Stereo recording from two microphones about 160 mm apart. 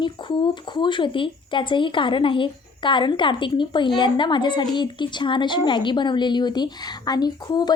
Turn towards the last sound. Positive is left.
turn(degrees=25)  # may be behind; listen again after turning